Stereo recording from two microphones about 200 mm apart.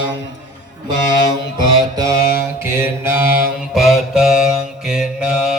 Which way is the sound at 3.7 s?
Centre (ahead or behind).